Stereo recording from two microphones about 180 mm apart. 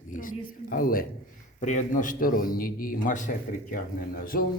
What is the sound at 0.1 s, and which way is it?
A man's voice, 50° left (ahead or behind).